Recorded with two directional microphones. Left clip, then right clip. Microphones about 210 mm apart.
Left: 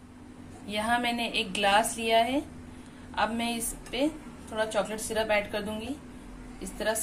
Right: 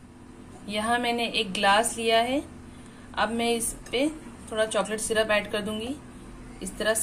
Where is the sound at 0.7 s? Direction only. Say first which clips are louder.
Right 2 dB; 15° right (ahead or behind).